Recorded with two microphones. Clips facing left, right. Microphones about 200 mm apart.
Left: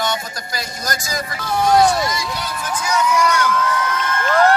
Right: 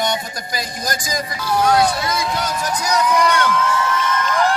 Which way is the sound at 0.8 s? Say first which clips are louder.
Even; 15° right (ahead or behind).